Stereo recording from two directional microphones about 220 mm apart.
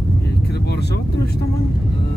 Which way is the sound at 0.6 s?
50° left (ahead or behind).